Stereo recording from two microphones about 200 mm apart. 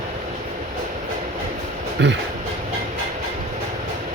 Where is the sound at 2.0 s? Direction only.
60° right (ahead or behind).